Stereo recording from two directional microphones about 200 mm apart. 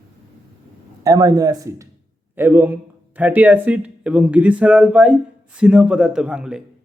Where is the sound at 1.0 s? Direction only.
15° right (ahead or behind).